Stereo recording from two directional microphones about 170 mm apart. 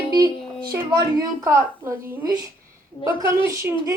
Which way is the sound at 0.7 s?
20° right (ahead or behind).